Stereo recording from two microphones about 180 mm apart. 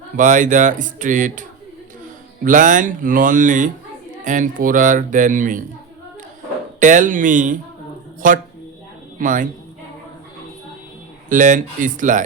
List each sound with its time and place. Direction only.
0.2 s speech: 45° right (ahead or behind)
6.7 s a man's voice: 45° right (ahead or behind)
11.3 s speech: 45° right (ahead or behind)